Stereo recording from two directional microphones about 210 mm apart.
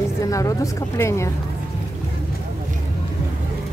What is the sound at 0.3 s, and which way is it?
Speech, 15° left (ahead or behind).